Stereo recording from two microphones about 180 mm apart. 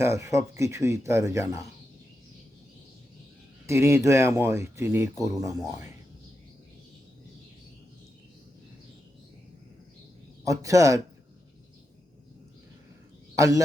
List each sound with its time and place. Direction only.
0.0 s speech: 15° right (ahead or behind)
3.7 s speech: 15° right (ahead or behind)
10.4 s speech: 15° right (ahead or behind)
13.3 s speech: 15° right (ahead or behind)